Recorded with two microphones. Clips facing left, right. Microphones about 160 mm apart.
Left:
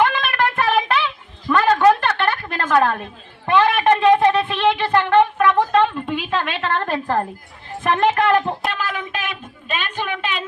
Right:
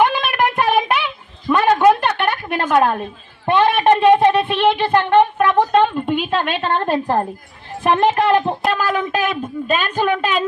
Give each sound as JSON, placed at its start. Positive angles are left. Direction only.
{"t": 0.0, "sound": "a sound", "side_deg": -15}
{"t": 3.4, "sound": "a woman's voice", "side_deg": -30}
{"t": 8.3, "sound": "speech", "side_deg": -30}
{"t": 8.7, "sound": "a woman's voice", "side_deg": -40}